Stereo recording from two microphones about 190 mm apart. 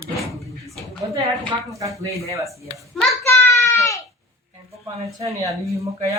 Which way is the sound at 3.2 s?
15° left (ahead or behind).